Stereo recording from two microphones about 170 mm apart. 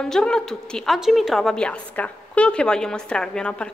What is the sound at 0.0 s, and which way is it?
A woman's voice, 5° left (ahead or behind).